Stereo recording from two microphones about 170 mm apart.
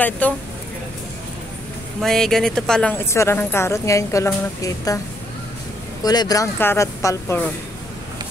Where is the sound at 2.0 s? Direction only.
5° left (ahead or behind); by 5.0 s 20° left (ahead or behind).